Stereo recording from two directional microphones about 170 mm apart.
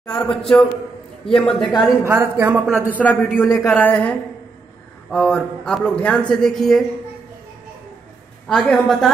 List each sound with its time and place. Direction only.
0.1 s a man's voice: 5° left (ahead or behind); by 2.6 s 15° right (ahead or behind)
2.8 s a man's voice: 10° left (ahead or behind)
8.5 s a man's voice: 5° left (ahead or behind)